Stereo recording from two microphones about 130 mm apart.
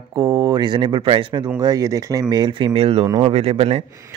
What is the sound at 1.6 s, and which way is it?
Speech, 25° right (ahead or behind).